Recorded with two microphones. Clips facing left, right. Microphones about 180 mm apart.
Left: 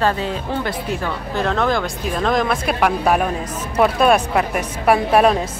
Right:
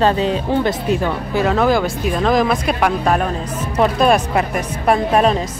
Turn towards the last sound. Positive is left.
turn(degrees=5)  # may be behind; listen again after turning